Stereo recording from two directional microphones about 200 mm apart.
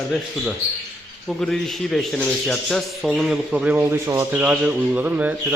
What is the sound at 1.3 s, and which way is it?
Speech, centre (ahead or behind).